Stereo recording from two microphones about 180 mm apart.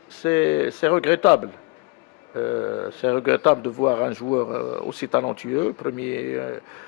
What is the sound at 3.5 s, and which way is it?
Speech, 25° left (ahead or behind).